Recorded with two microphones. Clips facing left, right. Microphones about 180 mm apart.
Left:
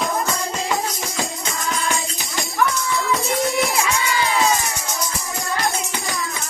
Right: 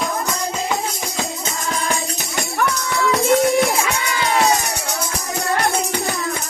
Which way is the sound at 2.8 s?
70° right (ahead or behind).